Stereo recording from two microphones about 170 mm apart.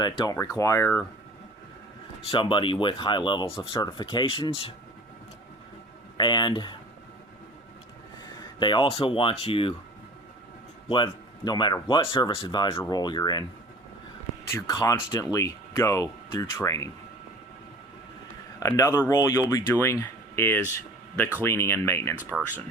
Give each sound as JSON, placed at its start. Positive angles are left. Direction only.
{"t": 0.0, "sound": "speech", "side_deg": 25}
{"t": 2.3, "sound": "speech", "side_deg": 30}
{"t": 6.1, "sound": "speech", "side_deg": 25}
{"t": 8.4, "sound": "speech", "side_deg": 25}
{"t": 10.8, "sound": "speech", "side_deg": 30}
{"t": 14.5, "sound": "speech", "side_deg": 20}
{"t": 18.6, "sound": "speech", "side_deg": 20}